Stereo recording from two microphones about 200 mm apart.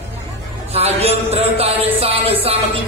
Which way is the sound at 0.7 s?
30° right (ahead or behind).